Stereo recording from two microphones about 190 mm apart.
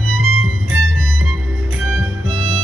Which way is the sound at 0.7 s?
90° right.